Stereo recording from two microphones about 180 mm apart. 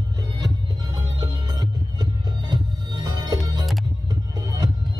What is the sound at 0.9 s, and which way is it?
Music, 20° right (ahead or behind).